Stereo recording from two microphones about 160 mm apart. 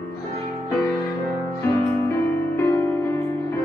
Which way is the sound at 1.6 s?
15° left (ahead or behind).